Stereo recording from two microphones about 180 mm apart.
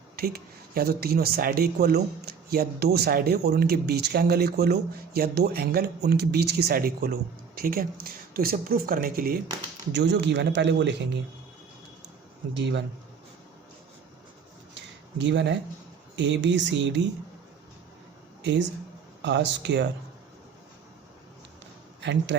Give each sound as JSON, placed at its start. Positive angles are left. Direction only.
{"t": 0.2, "sound": "speech", "side_deg": -55}
{"t": 9.9, "sound": "speech", "side_deg": -75}
{"t": 12.5, "sound": "speech", "side_deg": -75}
{"t": 14.8, "sound": "a sound", "side_deg": -80}
{"t": 16.1, "sound": "speech", "side_deg": -80}
{"t": 18.4, "sound": "speech", "side_deg": -80}
{"t": 22.0, "sound": "speech", "side_deg": -75}